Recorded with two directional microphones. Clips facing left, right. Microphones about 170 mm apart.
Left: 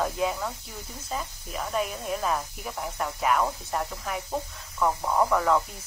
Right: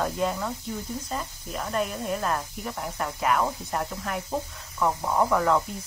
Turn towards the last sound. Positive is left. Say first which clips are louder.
# even
turn(degrees=0)  # may be behind; listen again after turning